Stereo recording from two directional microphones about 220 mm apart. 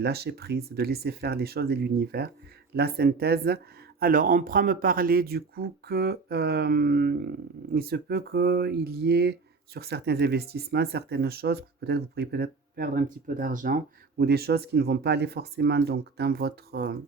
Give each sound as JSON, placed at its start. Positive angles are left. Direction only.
{"t": 0.0, "sound": "speech", "side_deg": -45}